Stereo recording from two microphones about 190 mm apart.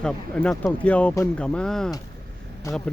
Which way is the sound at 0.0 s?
5° left (ahead or behind).